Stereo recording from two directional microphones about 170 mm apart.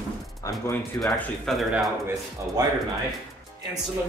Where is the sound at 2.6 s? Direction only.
20° right (ahead or behind).